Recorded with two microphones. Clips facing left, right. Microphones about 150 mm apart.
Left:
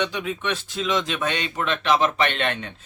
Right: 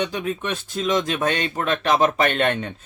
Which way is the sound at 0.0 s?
45° right (ahead or behind).